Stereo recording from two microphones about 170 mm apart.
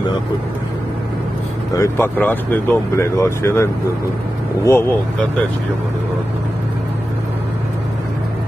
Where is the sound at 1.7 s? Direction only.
15° left (ahead or behind).